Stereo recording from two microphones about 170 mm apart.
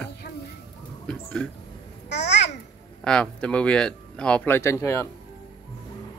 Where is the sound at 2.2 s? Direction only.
90° left.